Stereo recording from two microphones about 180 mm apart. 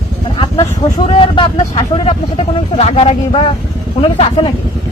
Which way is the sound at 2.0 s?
35° left (ahead or behind).